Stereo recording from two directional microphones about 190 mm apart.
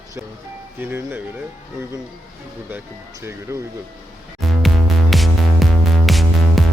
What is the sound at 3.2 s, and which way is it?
Speech, 15° right (ahead or behind).